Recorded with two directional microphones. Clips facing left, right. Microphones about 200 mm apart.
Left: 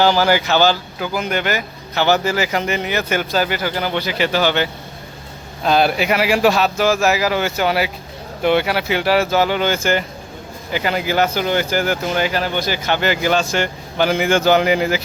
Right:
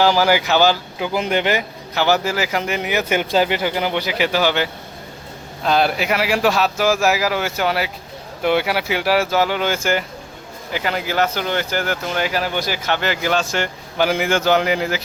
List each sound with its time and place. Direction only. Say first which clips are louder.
0.0 s speech: left 1 dB; 10° right (ahead or behind); by 1.6 s 25° right (ahead or behind)
2.0 s speech: left 1 dB; 5° right (ahead or behind)
5.6 s speech: left 2 dB; 5° left (ahead or behind)